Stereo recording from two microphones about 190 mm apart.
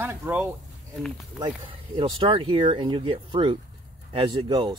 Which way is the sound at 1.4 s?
25° right (ahead or behind).